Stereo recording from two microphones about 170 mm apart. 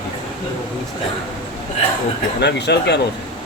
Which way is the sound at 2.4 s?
80° left.